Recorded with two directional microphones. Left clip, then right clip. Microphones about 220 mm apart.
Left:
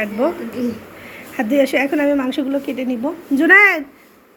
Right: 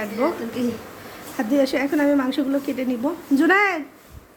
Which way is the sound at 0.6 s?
45° right (ahead or behind).